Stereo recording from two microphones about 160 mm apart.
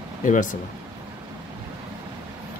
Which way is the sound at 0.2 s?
55° left (ahead or behind).